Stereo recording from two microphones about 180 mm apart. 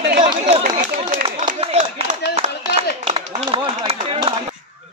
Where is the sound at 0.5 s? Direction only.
40° right (ahead or behind).